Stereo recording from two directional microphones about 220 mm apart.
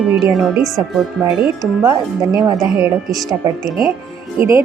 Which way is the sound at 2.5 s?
Centre (ahead or behind).